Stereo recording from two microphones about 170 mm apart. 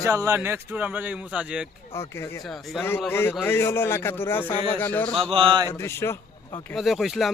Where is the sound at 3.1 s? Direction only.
15° left (ahead or behind).